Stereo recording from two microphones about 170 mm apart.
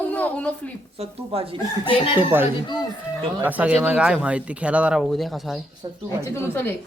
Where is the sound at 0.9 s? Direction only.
35° right (ahead or behind).